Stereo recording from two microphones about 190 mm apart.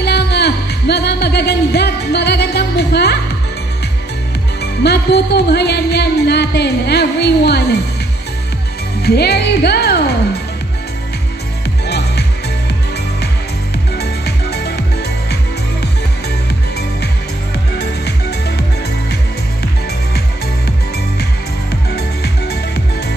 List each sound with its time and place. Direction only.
0.0 s music: 60° left (ahead or behind)
4.6 s music: 60° left (ahead or behind)
9.0 s music: 60° left (ahead or behind)
11.8 s music: 60° left (ahead or behind)
13.9 s music: 60° left (ahead or behind)
21.9 s music: 60° left (ahead or behind)